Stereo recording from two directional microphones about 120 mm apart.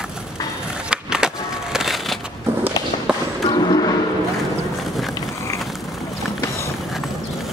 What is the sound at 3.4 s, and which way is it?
Music, 35° left (ahead or behind).